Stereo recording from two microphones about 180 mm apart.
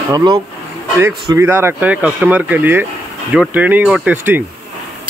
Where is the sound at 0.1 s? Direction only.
25° right (ahead or behind).